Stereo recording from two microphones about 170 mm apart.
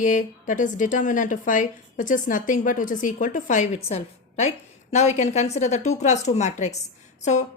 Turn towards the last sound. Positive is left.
turn(degrees=45)  # may be behind; listen again after turning